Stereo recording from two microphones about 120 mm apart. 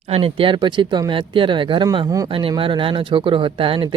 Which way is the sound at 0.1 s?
50° right (ahead or behind).